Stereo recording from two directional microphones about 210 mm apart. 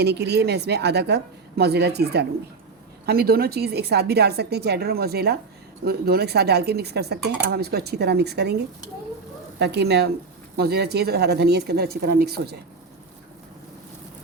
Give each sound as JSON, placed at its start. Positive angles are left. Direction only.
{"t": 0.0, "sound": "speech", "side_deg": -50}